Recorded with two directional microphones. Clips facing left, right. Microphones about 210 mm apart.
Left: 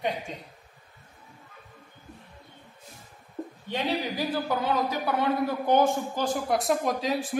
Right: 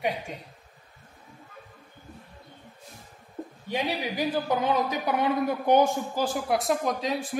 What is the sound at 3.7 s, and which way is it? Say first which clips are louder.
A man's voice: even; 20° right (ahead or behind).